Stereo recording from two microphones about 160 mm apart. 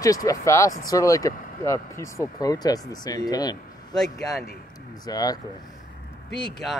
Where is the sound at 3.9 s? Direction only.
Centre (ahead or behind).